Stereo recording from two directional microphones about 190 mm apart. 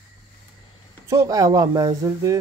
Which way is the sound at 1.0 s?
15° right (ahead or behind).